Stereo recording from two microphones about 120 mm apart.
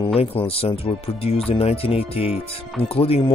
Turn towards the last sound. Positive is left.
turn(degrees=50)  # may be behind; listen again after turning